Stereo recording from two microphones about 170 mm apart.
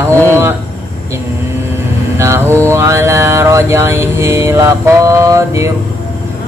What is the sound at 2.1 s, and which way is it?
Mantra, 15° right (ahead or behind).